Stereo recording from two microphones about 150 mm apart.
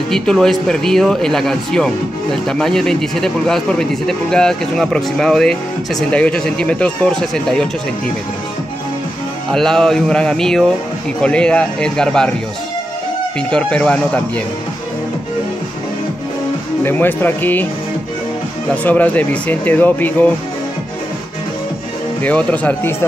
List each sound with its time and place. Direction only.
0.1 s a man's voice: 5° left (ahead or behind)
9.5 s a man's voice: 5° left (ahead or behind)
13.5 s speech: 5° left (ahead or behind)
16.8 s speech: 15° left (ahead or behind)
18.9 s speech: 10° left (ahead or behind)
22.2 s speech: 10° left (ahead or behind)